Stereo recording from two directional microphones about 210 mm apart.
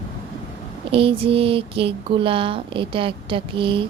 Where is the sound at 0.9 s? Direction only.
25° right (ahead or behind).